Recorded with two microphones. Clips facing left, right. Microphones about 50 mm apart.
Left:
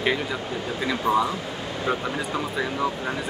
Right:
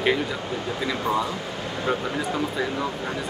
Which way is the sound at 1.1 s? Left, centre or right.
Left.